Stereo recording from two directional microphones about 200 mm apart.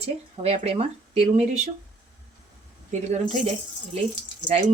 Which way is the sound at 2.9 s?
40° right (ahead or behind).